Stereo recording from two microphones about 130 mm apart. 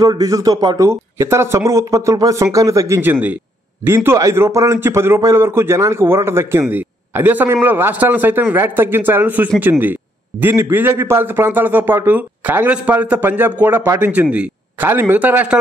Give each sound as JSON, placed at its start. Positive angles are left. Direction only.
{"t": 0.0, "sound": "a man's voice", "side_deg": -30}